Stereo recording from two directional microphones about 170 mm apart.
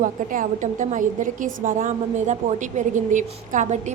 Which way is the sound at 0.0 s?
50° right (ahead or behind).